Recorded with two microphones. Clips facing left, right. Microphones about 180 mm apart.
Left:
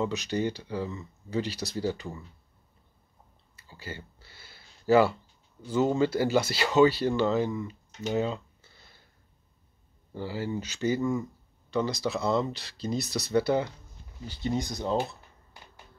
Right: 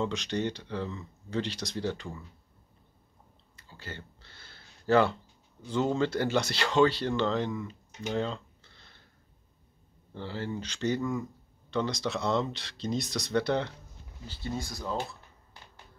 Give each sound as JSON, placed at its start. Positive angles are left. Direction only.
{"t": 0.0, "sound": "speech", "side_deg": 5}
{"t": 3.5, "sound": "a sound", "side_deg": 5}
{"t": 5.7, "sound": "speech", "side_deg": 5}
{"t": 8.1, "sound": "a sound", "side_deg": 5}
{"t": 10.1, "sound": "speech", "side_deg": 10}
{"t": 14.2, "sound": "speech", "side_deg": 15}